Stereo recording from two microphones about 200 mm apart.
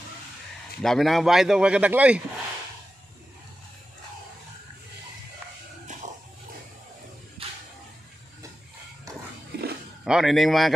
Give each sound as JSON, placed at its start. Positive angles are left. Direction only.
{"t": 0.8, "sound": "a man's voice", "side_deg": 0}
{"t": 9.5, "sound": "a sound", "side_deg": -50}
{"t": 10.0, "sound": "a man's voice", "side_deg": 0}